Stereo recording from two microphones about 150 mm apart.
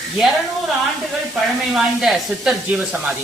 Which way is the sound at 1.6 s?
Centre (ahead or behind).